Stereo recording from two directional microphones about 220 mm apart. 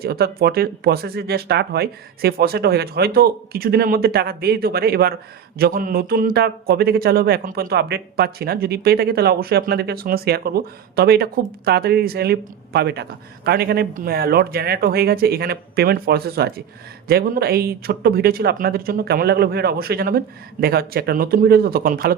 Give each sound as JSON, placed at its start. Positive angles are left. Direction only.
{"t": 0.0, "sound": "a man's voice", "side_deg": -45}